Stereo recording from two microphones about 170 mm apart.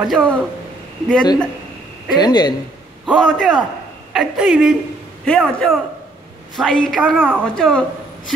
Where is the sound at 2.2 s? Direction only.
25° left (ahead or behind).